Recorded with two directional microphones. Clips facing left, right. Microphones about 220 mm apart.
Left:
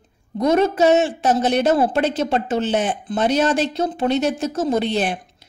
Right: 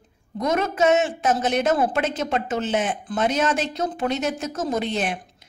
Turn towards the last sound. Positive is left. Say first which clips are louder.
# left 4 dB
turn(degrees=30)  # may be behind; listen again after turning